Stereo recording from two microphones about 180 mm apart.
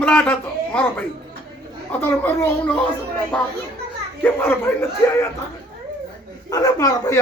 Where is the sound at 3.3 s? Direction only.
Centre (ahead or behind).